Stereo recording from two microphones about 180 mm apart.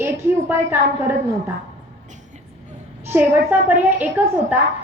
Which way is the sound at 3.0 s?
10° right (ahead or behind).